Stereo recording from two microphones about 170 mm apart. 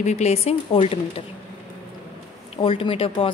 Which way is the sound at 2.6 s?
30° left (ahead or behind).